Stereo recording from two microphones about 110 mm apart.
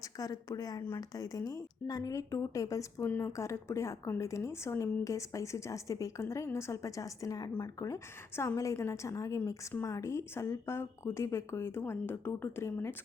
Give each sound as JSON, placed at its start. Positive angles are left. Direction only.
{"t": 0.0, "sound": "a woman's voice", "side_deg": 30}